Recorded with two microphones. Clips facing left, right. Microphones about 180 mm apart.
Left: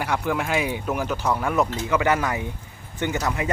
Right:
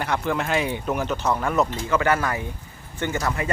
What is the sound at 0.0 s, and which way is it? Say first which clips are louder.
Speech: even; 10° left (ahead or behind).